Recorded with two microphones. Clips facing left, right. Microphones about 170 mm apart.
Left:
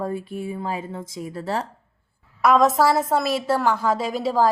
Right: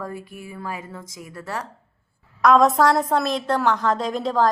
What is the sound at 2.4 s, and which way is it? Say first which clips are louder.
A woman's voice: right 1 dB; 5° left (ahead or behind).